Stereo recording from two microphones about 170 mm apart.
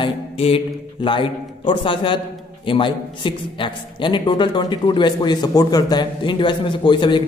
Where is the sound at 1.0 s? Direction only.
30° left (ahead or behind).